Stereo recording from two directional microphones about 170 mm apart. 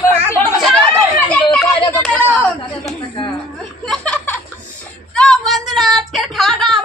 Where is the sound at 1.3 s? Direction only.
5° left (ahead or behind).